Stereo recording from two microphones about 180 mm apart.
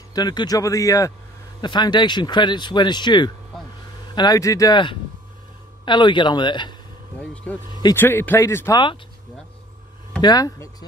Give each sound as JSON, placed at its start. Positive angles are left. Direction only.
{"t": 0.1, "sound": "speech", "side_deg": 25}
{"t": 7.5, "sound": "speech", "side_deg": 10}
{"t": 10.2, "sound": "speech", "side_deg": 20}